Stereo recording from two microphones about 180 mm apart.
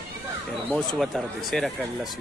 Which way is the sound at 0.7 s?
5° left (ahead or behind).